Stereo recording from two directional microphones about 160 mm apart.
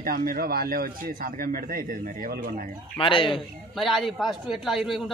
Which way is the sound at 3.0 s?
30° left (ahead or behind).